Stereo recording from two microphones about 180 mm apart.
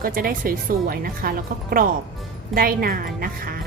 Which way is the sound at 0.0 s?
50° right (ahead or behind).